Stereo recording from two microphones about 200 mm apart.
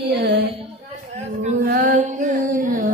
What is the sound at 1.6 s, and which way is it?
Music, 50° right (ahead or behind).